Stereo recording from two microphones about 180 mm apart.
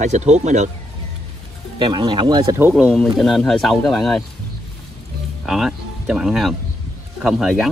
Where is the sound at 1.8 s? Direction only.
25° right (ahead or behind).